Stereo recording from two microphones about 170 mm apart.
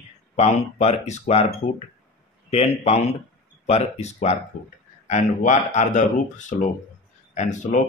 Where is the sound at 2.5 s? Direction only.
40° left (ahead or behind).